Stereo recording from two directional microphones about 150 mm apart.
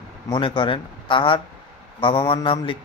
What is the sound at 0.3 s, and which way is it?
A man's voice, 30° left (ahead or behind).